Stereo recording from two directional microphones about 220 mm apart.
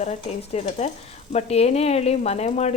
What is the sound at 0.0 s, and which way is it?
Speech, 30° left (ahead or behind).